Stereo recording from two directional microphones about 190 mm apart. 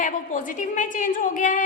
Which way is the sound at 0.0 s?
45° left (ahead or behind).